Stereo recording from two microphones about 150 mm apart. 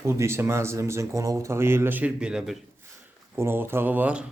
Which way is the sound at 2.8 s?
15° right (ahead or behind).